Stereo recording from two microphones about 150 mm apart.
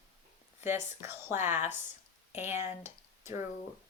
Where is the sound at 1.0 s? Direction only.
15° right (ahead or behind).